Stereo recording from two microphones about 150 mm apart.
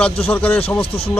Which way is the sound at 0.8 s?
40° left (ahead or behind).